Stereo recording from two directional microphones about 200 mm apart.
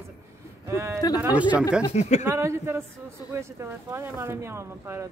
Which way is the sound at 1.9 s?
35° left (ahead or behind).